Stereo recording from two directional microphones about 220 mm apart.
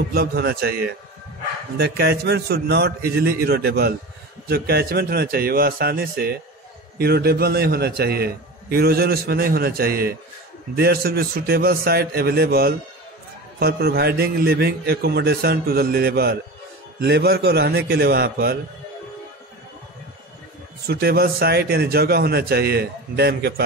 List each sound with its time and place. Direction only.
0.1 s a man's voice: 45° right (ahead or behind)
20.8 s a man's voice: 45° right (ahead or behind)